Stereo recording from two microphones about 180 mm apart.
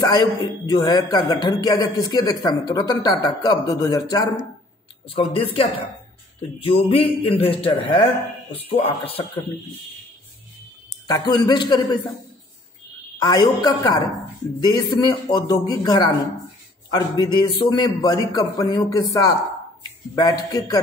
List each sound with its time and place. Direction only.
0.0 s a man's voice: 20° left (ahead or behind)
11.1 s a man's voice: 20° left (ahead or behind)
13.2 s a man's voice: 20° left (ahead or behind)